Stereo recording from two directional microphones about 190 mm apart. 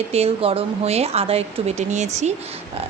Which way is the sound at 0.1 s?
30° right (ahead or behind).